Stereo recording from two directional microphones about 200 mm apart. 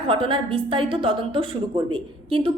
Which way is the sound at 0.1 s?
25° right (ahead or behind).